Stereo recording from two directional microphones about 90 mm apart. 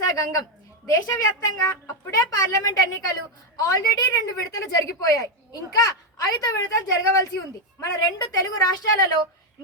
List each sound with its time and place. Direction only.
0.0 s a woman's voice: 40° left (ahead or behind)